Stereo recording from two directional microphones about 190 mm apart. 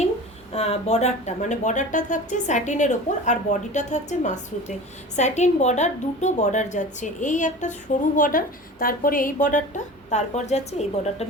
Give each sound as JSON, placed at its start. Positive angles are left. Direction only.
{"t": 0.5, "sound": "a woman's voice", "side_deg": 35}